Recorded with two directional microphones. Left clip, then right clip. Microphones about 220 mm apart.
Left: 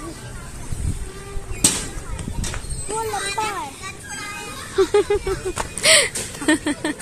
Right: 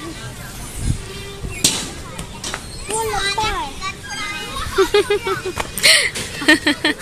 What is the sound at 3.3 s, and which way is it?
Speech, 40° left (ahead or behind).